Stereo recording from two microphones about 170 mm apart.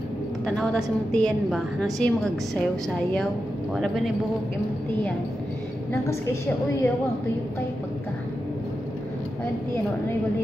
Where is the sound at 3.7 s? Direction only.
Centre (ahead or behind).